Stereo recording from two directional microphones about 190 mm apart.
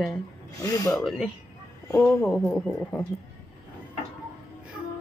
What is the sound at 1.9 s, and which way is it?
Speech, 15° left (ahead or behind).